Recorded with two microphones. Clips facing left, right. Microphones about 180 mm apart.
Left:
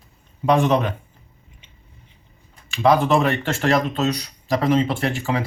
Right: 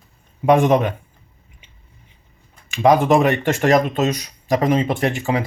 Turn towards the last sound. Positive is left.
turn(degrees=-15)  # may be behind; listen again after turning